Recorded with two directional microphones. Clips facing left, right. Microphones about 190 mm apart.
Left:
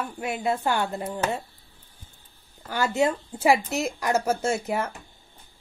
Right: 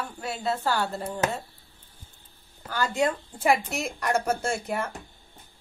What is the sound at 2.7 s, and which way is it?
Speech, 20° left (ahead or behind).